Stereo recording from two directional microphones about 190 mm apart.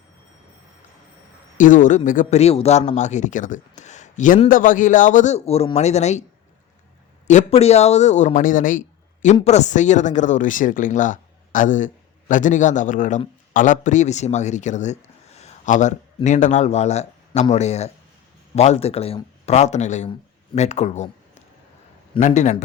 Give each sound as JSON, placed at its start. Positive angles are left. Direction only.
{"t": 1.5, "sound": "a man's voice", "side_deg": 45}
{"t": 7.3, "sound": "a man's voice", "side_deg": 35}